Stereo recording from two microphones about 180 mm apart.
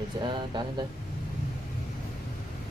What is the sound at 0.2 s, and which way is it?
Speech, 25° right (ahead or behind).